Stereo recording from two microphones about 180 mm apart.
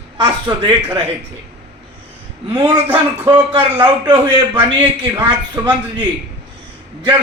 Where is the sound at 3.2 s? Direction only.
25° right (ahead or behind).